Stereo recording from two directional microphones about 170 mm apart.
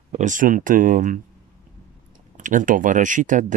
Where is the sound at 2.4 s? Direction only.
50° right (ahead or behind).